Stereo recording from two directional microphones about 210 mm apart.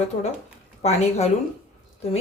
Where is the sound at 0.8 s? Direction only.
30° left (ahead or behind).